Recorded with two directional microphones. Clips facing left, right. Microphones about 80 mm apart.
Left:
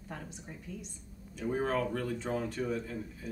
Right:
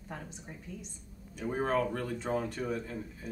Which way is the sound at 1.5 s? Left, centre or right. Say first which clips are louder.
Right 1 dB; right.